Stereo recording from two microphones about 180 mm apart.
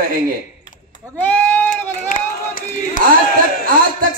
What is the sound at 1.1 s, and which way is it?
Sheep, 10° left (ahead or behind).